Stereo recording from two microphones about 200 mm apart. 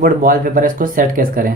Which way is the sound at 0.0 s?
45° right (ahead or behind).